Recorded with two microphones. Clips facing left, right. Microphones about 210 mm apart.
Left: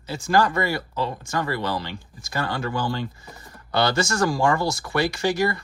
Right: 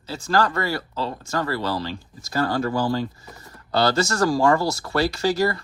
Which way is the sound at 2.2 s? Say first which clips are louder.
Right 5 dB; 40° right (ahead or behind).